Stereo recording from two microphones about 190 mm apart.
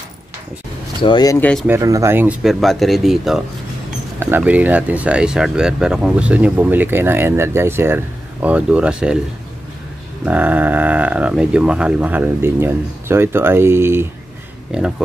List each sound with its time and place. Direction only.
1.0 s speech: 20° left (ahead or behind)
1.4 s speech: 5° left (ahead or behind)
1.7 s speech: 15° right (ahead or behind)
10.2 s speech: 10° right (ahead or behind)